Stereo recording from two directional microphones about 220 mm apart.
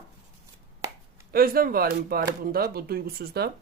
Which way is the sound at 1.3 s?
40° right (ahead or behind).